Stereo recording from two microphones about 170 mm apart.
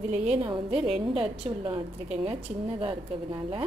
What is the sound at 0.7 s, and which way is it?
Speech, 5° right (ahead or behind).